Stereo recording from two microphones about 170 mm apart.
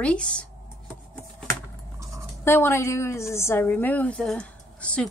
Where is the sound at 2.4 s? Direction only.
15° left (ahead or behind).